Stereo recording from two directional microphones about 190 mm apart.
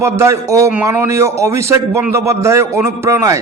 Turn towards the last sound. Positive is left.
turn(degrees=-15)  # may be behind; listen again after turning